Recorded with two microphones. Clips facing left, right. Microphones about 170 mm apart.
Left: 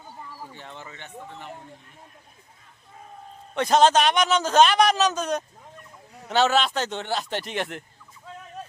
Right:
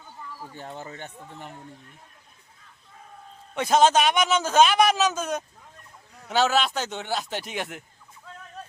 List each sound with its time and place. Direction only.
0.5 s speech: 40° right (ahead or behind)
3.5 s a man's voice: 5° right (ahead or behind)